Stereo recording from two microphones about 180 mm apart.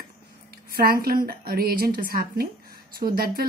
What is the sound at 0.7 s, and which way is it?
Speech, 55° right (ahead or behind).